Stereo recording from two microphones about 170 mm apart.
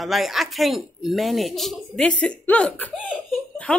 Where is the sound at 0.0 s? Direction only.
Centre (ahead or behind).